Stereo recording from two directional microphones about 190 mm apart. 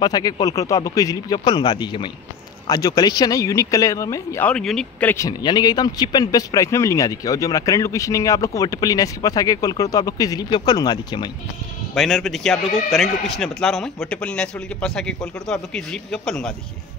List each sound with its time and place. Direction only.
0.0 s a man's voice: 20° left (ahead or behind); by 5.1 s 5° left (ahead or behind)
5.1 s speech: 20° left (ahead or behind)
11.9 s speech: centre (ahead or behind)